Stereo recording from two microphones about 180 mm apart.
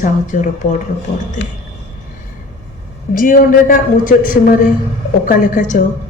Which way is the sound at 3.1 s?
50° left (ahead or behind).